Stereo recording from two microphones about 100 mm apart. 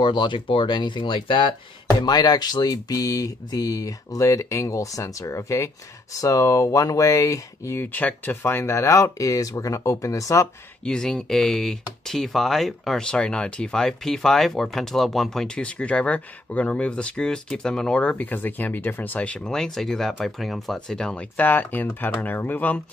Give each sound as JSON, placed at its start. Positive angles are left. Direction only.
{"t": 0.0, "sound": "speech", "side_deg": 50}
{"t": 2.0, "sound": "speech", "side_deg": 40}
{"t": 10.8, "sound": "speech", "side_deg": 10}
{"t": 21.4, "sound": "speech", "side_deg": 15}